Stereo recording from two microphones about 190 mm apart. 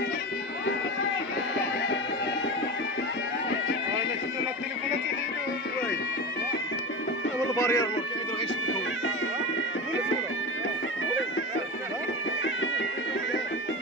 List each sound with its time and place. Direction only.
7.5 s speech: 20° left (ahead or behind)